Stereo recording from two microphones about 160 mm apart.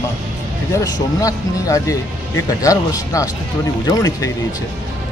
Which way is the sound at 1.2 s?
20° left (ahead or behind).